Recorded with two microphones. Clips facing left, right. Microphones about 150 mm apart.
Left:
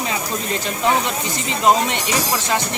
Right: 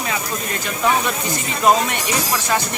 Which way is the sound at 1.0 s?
25° left (ahead or behind).